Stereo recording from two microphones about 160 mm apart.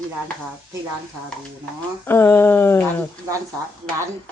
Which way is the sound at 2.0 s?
15° left (ahead or behind).